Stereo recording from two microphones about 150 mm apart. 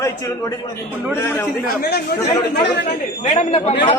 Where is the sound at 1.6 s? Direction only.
90° left.